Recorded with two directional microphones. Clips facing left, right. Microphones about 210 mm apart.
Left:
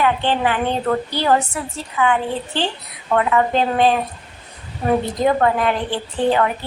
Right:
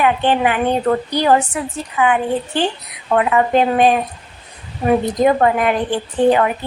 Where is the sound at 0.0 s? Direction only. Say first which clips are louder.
Right 3 dB; 15° right (ahead or behind).